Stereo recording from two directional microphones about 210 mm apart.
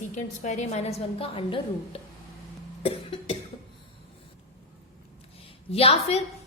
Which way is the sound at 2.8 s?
25° left (ahead or behind).